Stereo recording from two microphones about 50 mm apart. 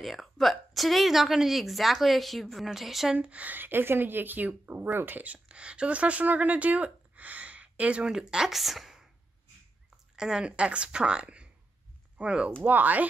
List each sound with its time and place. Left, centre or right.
0.0 s a woman's voice: centre
3.2 s a woman's voice: right
3.5 s speech: right
8.1 s speech: centre
8.5 s speech: centre
10.1 s a woman's voice: centre
12.6 s speech: right